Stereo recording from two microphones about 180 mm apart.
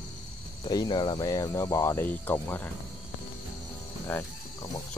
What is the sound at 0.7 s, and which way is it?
Speech, 25° left (ahead or behind).